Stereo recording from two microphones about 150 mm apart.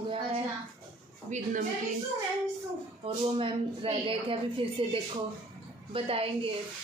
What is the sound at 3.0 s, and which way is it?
A woman's voice, 40° right (ahead or behind).